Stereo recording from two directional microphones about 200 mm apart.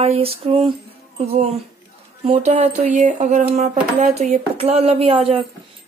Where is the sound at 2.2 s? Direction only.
30° right (ahead or behind).